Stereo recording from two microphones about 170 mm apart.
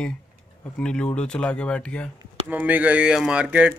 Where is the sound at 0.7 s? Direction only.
5° left (ahead or behind).